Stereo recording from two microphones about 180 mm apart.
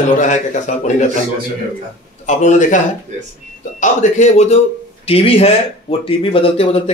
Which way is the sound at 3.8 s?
40° left (ahead or behind).